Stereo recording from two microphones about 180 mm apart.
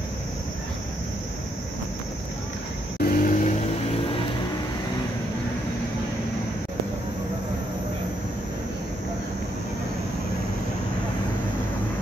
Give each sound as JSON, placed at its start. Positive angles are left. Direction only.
{"t": 3.0, "sound": "vehicle", "side_deg": 50}